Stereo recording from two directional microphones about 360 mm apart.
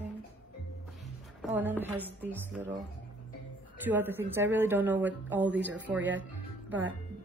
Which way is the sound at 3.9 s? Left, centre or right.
Centre.